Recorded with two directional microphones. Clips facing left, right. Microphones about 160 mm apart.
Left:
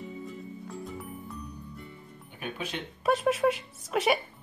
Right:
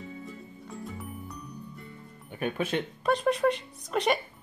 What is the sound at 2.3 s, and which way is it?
Speech, 50° right (ahead or behind).